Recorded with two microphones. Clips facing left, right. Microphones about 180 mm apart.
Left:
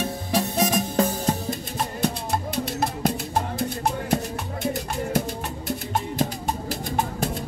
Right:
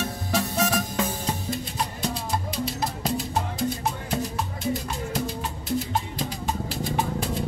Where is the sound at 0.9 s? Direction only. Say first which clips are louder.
Left 5 dB; 40° left (ahead or behind).